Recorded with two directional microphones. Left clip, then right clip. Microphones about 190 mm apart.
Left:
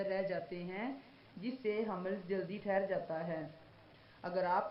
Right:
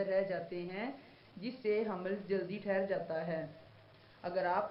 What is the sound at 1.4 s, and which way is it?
A woman's voice, 20° left (ahead or behind).